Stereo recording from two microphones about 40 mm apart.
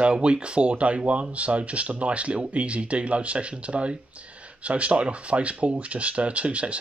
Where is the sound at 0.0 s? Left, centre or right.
Right.